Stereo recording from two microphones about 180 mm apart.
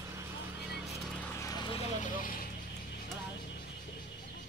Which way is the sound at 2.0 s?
50° left (ahead or behind).